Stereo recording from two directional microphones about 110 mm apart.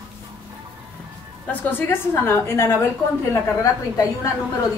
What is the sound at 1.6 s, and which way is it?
A woman's voice, 20° left (ahead or behind).